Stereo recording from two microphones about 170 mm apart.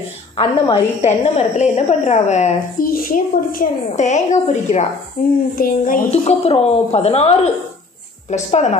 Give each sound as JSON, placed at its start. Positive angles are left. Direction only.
{"t": 1.0, "sound": "a woman's voice", "side_deg": 40}
{"t": 2.9, "sound": "a woman's voice", "side_deg": 55}
{"t": 5.2, "sound": "speech", "side_deg": 55}
{"t": 6.0, "sound": "a woman's voice", "side_deg": 35}